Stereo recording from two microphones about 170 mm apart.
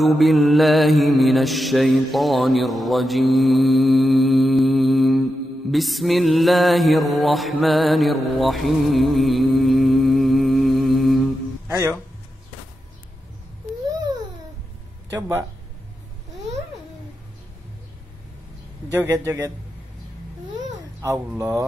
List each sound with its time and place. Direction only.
0.0 s mantra: centre (ahead or behind)
11.6 s music: 15° right (ahead or behind)
15.1 s speech: 15° right (ahead or behind)
18.9 s speech: 15° right (ahead or behind)
21.0 s speech: 15° right (ahead or behind)